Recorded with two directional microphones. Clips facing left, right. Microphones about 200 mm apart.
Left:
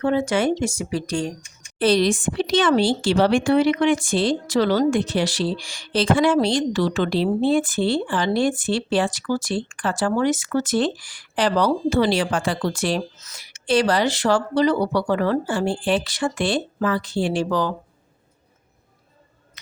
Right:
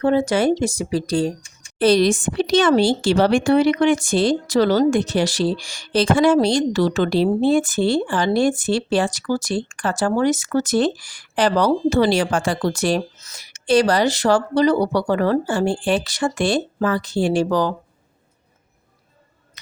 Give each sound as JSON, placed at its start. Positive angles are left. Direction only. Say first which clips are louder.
{"t": 0.0, "sound": "a woman's voice", "louder": "right 3 dB", "side_deg": -35}